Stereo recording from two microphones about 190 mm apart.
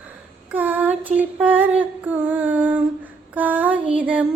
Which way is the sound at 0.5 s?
10° right (ahead or behind).